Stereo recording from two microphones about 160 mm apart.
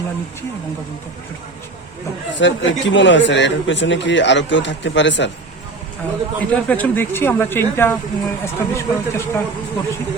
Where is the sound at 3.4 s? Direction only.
90° left.